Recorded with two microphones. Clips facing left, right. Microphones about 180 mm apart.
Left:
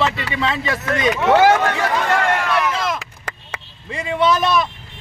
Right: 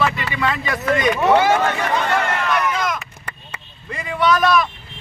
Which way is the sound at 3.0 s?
90° left.